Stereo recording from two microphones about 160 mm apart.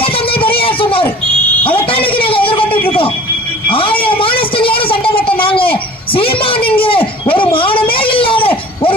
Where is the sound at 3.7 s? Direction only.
35° left (ahead or behind).